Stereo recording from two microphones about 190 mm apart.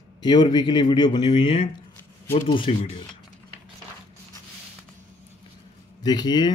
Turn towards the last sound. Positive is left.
turn(degrees=20)  # may be behind; listen again after turning